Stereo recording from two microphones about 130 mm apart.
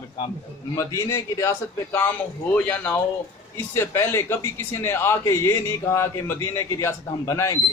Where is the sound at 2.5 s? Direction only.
10° left (ahead or behind).